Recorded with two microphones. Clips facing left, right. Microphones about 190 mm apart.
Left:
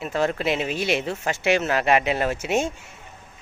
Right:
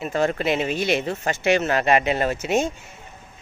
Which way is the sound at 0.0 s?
Centre (ahead or behind).